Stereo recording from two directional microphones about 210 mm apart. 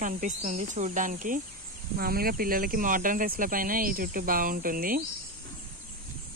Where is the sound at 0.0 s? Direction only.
35° right (ahead or behind).